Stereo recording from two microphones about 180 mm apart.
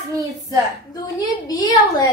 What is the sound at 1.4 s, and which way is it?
Speech, 20° left (ahead or behind).